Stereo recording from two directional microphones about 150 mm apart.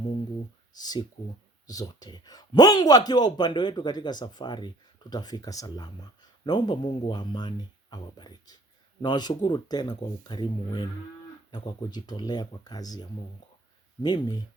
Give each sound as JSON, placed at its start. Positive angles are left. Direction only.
{"t": 0.8, "sound": "speech", "side_deg": 25}